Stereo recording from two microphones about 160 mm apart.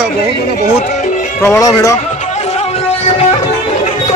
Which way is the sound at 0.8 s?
50° left (ahead or behind).